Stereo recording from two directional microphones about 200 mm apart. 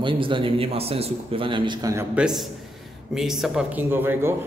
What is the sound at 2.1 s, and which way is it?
A man's voice, 5° right (ahead or behind).